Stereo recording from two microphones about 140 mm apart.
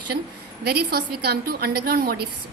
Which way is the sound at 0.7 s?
90° right.